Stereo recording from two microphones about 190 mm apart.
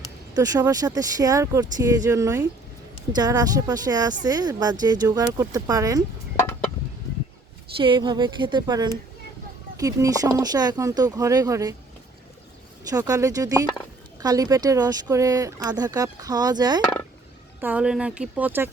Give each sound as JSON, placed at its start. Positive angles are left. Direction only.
{"t": 0.3, "sound": "speech", "side_deg": -20}
{"t": 7.8, "sound": "speech", "side_deg": -25}
{"t": 12.9, "sound": "speech", "side_deg": -20}
{"t": 17.6, "sound": "speech", "side_deg": -5}